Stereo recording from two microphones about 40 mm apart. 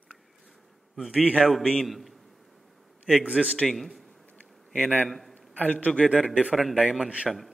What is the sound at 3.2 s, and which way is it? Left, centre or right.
Speech, right.